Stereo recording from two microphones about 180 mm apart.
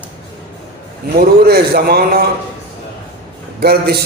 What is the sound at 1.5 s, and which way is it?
Speech, 60° right (ahead or behind).